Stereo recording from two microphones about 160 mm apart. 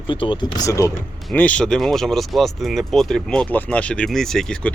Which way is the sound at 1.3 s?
10° left (ahead or behind).